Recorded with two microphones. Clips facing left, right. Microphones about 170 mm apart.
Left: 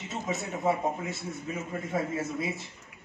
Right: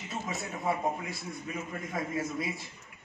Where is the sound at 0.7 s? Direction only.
25° left (ahead or behind).